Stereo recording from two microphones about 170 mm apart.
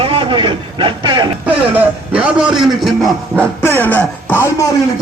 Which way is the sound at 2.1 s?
5° right (ahead or behind).